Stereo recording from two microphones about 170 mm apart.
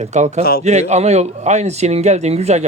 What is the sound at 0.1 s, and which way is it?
A man's voice, 45° right (ahead or behind).